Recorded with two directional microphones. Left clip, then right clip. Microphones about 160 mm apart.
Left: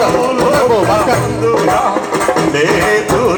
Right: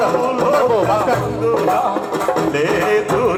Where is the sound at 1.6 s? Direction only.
30° right (ahead or behind).